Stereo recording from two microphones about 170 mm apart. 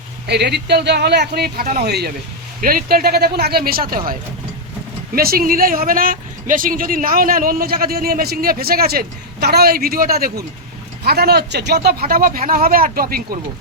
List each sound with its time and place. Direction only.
0.3 s speech: 75° right (ahead or behind)
2.6 s speech: 55° right (ahead or behind)